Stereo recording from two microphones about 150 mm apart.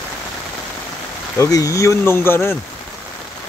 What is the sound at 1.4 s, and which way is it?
Speech, 20° left (ahead or behind).